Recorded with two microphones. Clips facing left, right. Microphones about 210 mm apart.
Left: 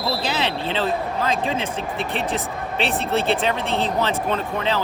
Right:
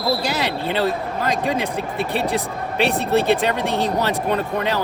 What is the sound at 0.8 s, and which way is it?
Speech, 15° right (ahead or behind).